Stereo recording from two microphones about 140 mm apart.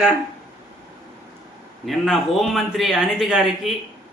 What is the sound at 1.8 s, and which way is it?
Speech, centre (ahead or behind).